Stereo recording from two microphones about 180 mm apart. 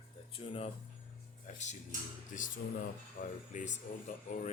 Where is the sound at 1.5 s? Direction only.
40° left (ahead or behind).